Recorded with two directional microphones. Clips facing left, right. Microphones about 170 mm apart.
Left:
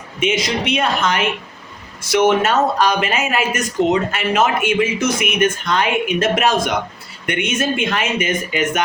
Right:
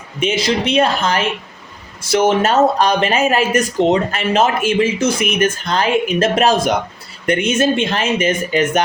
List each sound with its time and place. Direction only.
0.2 s speech: 30° right (ahead or behind)